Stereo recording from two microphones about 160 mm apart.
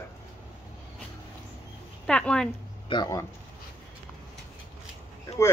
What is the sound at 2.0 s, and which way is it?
Speech, 5° left (ahead or behind).